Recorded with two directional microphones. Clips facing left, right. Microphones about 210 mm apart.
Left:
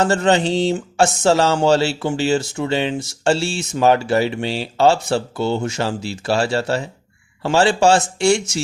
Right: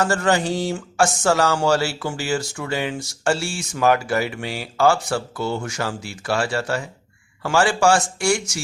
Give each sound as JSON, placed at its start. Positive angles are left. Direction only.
{"t": 0.0, "sound": "speech", "side_deg": 20}